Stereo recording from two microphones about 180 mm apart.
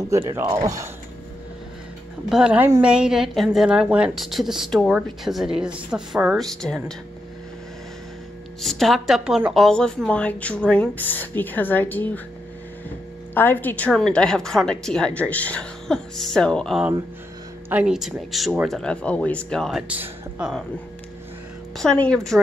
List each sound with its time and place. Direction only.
0.1 s speech: 15° right (ahead or behind)
2.2 s a woman's voice: 5° right (ahead or behind)
8.5 s a woman's voice: centre (ahead or behind)
13.3 s a woman's voice: 10° left (ahead or behind); by 20.6 s 5° right (ahead or behind)
21.7 s a woman's voice: 5° left (ahead or behind)